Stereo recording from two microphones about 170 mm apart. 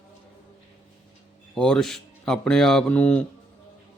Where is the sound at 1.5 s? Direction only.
5° left (ahead or behind).